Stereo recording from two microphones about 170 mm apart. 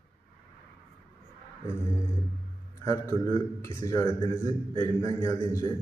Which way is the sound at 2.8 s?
15° left (ahead or behind).